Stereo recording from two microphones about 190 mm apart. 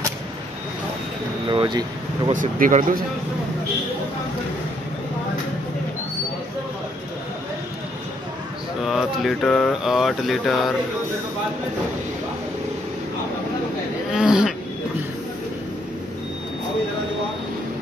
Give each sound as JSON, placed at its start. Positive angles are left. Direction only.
{"t": 1.5, "sound": "speech", "side_deg": -25}
{"t": 2.3, "sound": "speech", "side_deg": -45}
{"t": 8.8, "sound": "mantra", "side_deg": 0}
{"t": 14.1, "sound": "mantra", "side_deg": -5}